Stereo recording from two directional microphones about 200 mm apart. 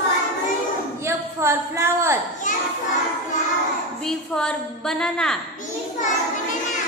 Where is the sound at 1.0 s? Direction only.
15° right (ahead or behind).